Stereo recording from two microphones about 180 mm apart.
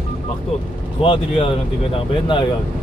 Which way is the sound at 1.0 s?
30° left (ahead or behind).